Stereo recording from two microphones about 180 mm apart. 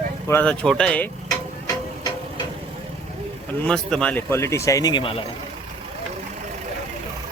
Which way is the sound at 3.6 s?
5° left (ahead or behind).